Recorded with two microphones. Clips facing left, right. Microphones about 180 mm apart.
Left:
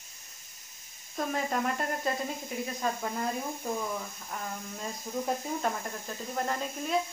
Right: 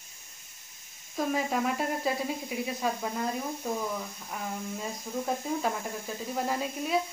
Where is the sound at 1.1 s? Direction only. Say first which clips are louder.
Right 2 dB; 5° right (ahead or behind).